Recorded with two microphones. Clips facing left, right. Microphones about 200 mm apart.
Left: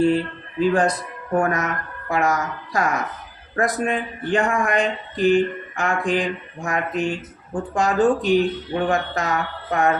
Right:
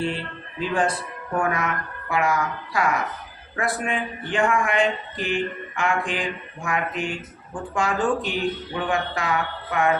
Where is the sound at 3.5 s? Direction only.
45° left (ahead or behind).